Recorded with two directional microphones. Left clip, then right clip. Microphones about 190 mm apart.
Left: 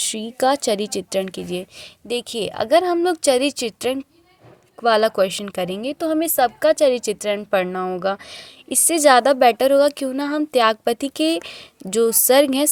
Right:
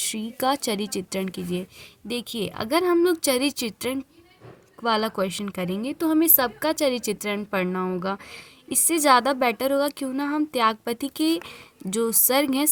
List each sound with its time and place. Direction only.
0.0 s a woman's voice: 20° left (ahead or behind)